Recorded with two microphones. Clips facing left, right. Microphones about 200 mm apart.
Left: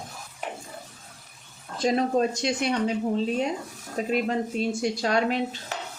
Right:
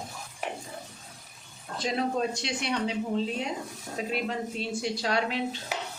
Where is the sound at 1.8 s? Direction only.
45° left (ahead or behind).